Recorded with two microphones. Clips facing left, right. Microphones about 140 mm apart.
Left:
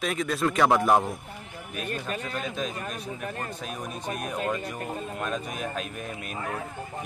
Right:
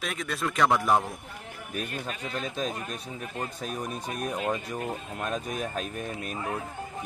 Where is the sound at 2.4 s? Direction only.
40° right (ahead or behind).